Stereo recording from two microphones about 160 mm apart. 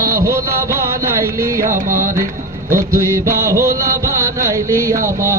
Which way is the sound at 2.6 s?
20° right (ahead or behind).